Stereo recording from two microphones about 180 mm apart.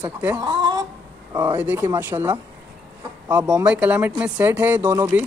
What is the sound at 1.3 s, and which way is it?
Speech, 15° right (ahead or behind).